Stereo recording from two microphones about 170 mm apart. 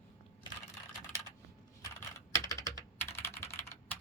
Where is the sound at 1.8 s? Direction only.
20° left (ahead or behind).